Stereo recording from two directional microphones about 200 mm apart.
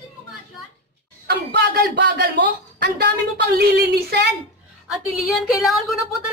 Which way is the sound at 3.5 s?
55° right (ahead or behind).